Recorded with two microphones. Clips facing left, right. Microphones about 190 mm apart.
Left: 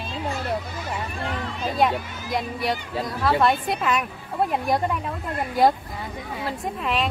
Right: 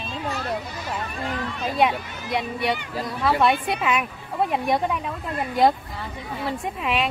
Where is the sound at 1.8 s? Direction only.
Centre (ahead or behind).